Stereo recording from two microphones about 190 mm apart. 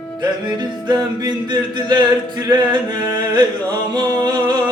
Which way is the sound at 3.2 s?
25° right (ahead or behind).